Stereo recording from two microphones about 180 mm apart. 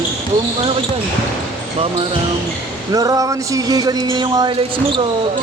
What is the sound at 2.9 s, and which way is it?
Speech, 20° right (ahead or behind).